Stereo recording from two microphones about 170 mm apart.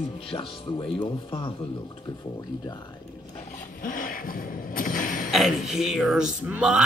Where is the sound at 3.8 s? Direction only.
55° left (ahead or behind).